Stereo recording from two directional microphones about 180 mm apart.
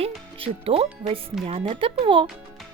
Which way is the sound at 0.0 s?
35° right (ahead or behind).